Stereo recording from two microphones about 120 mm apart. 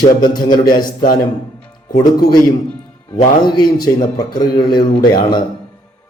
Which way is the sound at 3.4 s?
35° left (ahead or behind).